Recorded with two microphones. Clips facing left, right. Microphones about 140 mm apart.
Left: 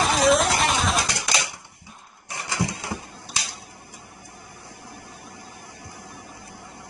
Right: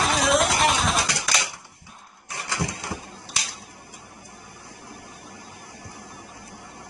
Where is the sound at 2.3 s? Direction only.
15° left (ahead or behind).